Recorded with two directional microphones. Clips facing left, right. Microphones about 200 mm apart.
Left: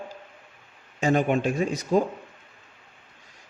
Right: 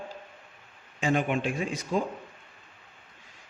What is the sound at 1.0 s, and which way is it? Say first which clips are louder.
A man's voice: left 4 dB; 40° left (ahead or behind).